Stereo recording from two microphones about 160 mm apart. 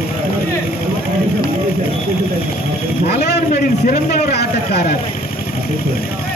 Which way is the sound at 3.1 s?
85° left.